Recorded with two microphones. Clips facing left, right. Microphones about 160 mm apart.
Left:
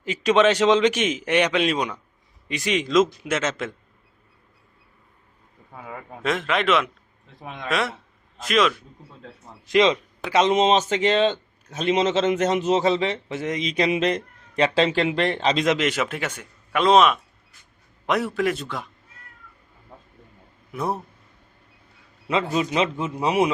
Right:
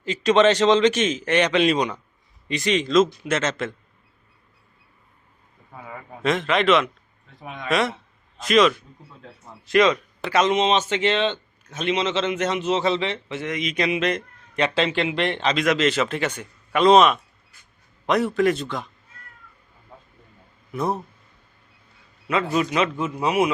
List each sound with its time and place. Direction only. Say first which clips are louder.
0.0 s a man's voice: right 1 dB; 10° left (ahead or behind)
6.2 s a man's voice: right 3 dB; 5° left (ahead or behind)
9.6 s speech: even; 20° left (ahead or behind)
10.4 s a man's voice: left 2 dB; 40° left (ahead or behind)
15.6 s a man's voice: right 1 dB; 15° left (ahead or behind)
20.7 s a man's voice: right 2 dB; 10° left (ahead or behind)
22.3 s speech: right 1 dB; 25° left (ahead or behind)